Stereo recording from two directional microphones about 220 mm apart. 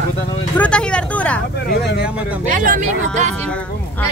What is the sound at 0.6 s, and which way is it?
Speech, 5° left (ahead or behind).